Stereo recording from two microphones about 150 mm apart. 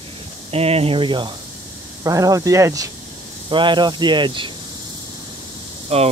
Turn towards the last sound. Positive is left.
turn(degrees=-45)  # may be behind; listen again after turning